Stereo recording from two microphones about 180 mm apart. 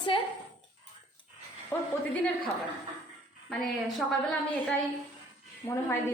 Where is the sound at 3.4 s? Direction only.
Centre (ahead or behind).